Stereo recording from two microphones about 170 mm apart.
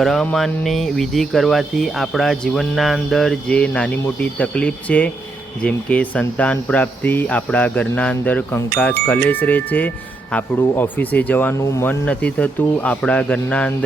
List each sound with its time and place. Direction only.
0.0 s speech: centre (ahead or behind)